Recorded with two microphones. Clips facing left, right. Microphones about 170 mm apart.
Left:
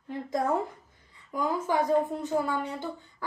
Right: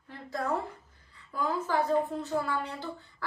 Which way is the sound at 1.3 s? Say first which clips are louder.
Left 2 dB; 15° left (ahead or behind).